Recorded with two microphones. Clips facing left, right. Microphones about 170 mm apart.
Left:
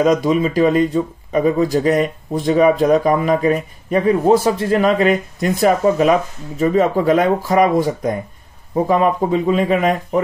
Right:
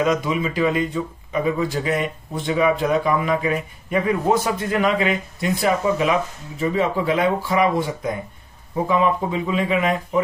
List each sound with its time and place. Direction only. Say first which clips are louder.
0.0 s speech: left 6 dB; 40° left (ahead or behind)